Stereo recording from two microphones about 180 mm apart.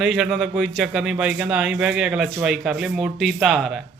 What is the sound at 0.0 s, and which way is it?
A man's voice, centre (ahead or behind).